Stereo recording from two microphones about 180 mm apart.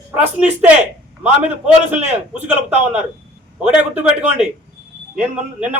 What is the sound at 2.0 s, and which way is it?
Speech, 40° right (ahead or behind).